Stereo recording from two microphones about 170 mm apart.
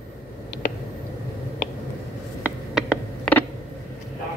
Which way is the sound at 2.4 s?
5° right (ahead or behind).